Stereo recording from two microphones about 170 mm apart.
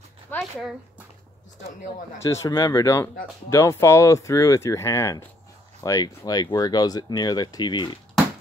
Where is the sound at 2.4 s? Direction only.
20° left (ahead or behind).